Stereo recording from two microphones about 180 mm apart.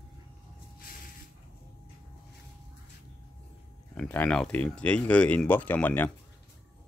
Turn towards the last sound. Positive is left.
turn(degrees=10)  # may be behind; listen again after turning